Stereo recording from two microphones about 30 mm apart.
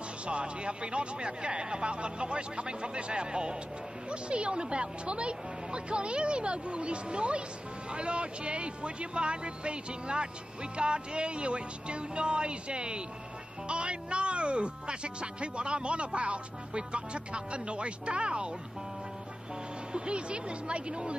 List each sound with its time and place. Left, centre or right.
0.3 s speech: right
19.9 s speech: right